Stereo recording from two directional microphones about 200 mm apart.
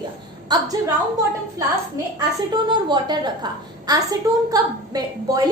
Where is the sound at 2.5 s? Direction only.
20° right (ahead or behind).